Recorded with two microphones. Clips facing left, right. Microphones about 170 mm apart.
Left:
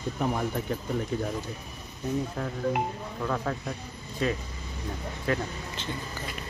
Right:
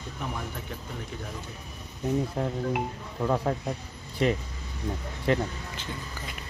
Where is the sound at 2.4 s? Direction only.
25° right (ahead or behind).